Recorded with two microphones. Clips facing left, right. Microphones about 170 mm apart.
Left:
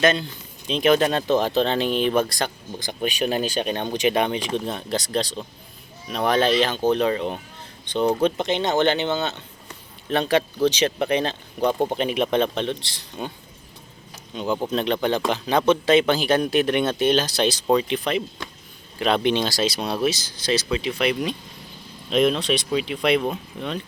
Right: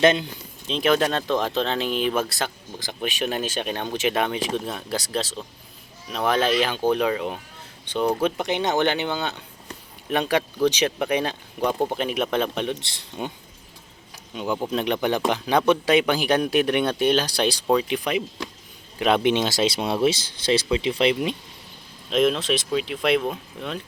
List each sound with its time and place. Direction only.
0.0 s speech: 20° right (ahead or behind)
0.7 s speech: centre (ahead or behind)
12.9 s speech: 20° right (ahead or behind)
14.3 s speech: 10° right (ahead or behind)
22.1 s speech: centre (ahead or behind)